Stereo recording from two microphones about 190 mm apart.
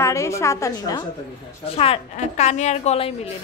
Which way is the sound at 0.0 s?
15° left (ahead or behind).